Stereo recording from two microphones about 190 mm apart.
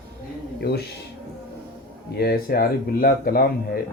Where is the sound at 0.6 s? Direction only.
60° left (ahead or behind).